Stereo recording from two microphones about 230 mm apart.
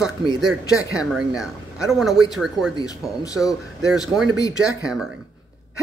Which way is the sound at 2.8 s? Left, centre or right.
Centre.